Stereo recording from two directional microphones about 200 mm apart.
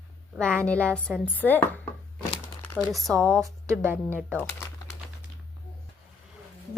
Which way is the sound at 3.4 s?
15° right (ahead or behind).